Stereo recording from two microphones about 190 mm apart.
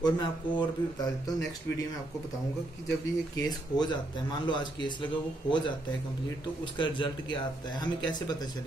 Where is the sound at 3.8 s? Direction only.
25° left (ahead or behind).